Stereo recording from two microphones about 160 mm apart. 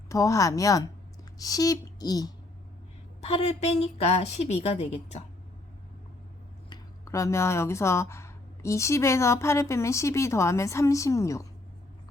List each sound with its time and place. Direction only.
0.1 s speech: 20° left (ahead or behind)
3.2 s a woman's voice: 40° left (ahead or behind)
6.7 s speech: 20° left (ahead or behind)